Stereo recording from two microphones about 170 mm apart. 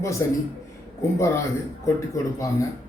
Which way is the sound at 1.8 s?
15° left (ahead or behind).